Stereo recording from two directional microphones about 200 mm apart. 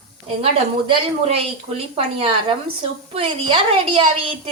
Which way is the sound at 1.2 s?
30° right (ahead or behind).